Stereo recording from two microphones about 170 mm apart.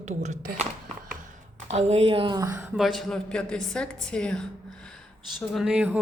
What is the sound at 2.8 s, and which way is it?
A woman's voice, centre (ahead or behind).